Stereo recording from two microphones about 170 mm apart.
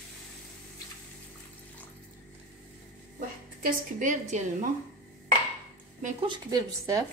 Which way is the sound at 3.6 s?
50° right (ahead or behind).